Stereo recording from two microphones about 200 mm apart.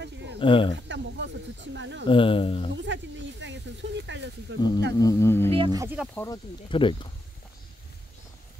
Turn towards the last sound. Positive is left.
turn(degrees=25)  # may be behind; listen again after turning